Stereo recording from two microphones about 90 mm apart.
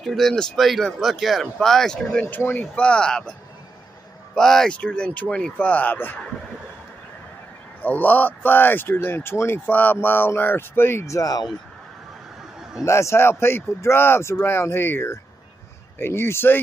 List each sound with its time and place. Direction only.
0.0 s speech: centre (ahead or behind)
4.4 s speech: 5° left (ahead or behind)
7.8 s speech: 20° left (ahead or behind); by 11.5 s 45° left (ahead or behind)
12.8 s speech: 30° left (ahead or behind)